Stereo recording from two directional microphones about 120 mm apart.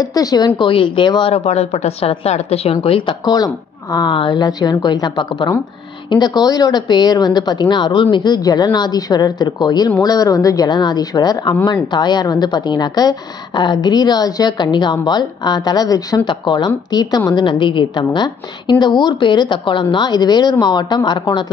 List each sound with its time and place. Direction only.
0.0 s a woman's voice: 30° left (ahead or behind)
0.6 s speech: 45° left (ahead or behind)
1.3 s a woman's voice: 60° left (ahead or behind)
3.3 s a woman's voice: 35° left (ahead or behind)